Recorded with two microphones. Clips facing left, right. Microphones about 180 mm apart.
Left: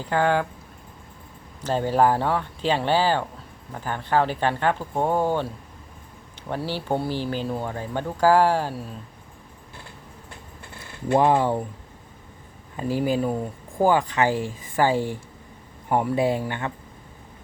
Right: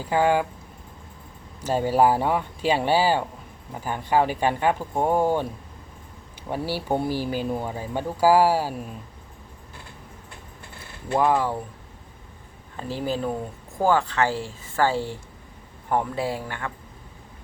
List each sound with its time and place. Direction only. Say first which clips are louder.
0.0 s speech: right 1 dB; 10° right (ahead or behind)
1.6 s speech: right 1 dB; 10° right (ahead or behind)
6.5 s speech: right 1 dB; 10° right (ahead or behind)
11.1 s speech: left 3 dB; 30° left (ahead or behind)
12.7 s speech: left 4 dB; 10° left (ahead or behind)